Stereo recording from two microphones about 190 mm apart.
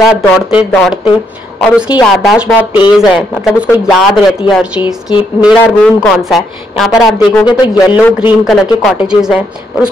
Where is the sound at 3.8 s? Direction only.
Centre (ahead or behind).